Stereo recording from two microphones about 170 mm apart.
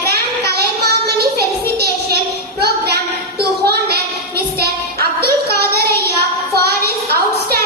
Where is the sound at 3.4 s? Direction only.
70° right (ahead or behind).